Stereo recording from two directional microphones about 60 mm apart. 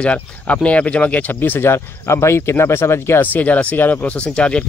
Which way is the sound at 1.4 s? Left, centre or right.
Left.